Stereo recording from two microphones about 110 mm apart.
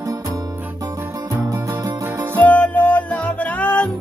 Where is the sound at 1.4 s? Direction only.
30° right (ahead or behind).